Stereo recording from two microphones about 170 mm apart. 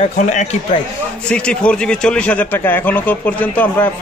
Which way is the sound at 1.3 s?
5° left (ahead or behind).